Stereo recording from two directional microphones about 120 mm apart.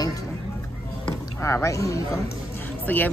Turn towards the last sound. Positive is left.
turn(degrees=15)  # may be behind; listen again after turning